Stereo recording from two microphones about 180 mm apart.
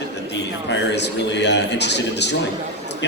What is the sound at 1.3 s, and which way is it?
A man's voice, 75° left (ahead or behind).